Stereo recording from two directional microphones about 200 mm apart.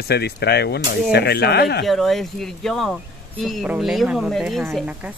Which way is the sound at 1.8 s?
Centre (ahead or behind).